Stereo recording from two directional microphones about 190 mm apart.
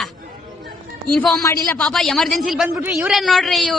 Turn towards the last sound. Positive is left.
turn(degrees=0)  # may be behind; listen again after turning